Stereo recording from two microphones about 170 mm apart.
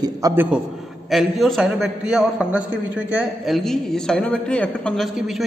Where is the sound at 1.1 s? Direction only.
Centre (ahead or behind).